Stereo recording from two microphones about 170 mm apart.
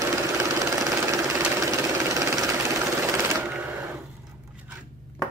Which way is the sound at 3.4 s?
5° right (ahead or behind).